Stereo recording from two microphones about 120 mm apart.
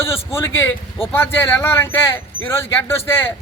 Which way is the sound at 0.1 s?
20° left (ahead or behind).